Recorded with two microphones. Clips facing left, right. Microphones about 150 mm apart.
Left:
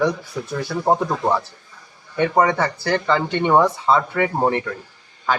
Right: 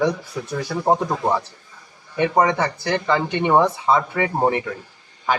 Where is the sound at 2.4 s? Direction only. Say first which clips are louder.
Left 1 dB; 20° right (ahead or behind).